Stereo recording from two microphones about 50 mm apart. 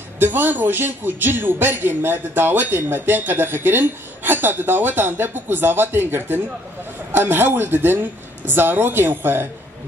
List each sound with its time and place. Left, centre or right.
0.2 s a man's voice: right